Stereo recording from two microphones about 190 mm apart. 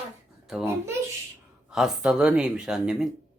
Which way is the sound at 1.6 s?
5° right (ahead or behind).